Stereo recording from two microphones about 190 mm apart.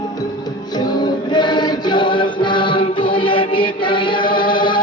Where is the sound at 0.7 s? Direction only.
20° left (ahead or behind).